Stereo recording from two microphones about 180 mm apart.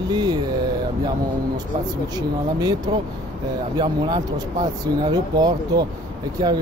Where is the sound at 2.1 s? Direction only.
25° right (ahead or behind).